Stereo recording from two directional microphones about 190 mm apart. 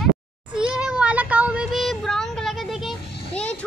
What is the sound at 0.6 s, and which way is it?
Child singing, 5° right (ahead or behind).